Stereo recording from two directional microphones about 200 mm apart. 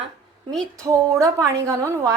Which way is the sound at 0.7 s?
15° right (ahead or behind).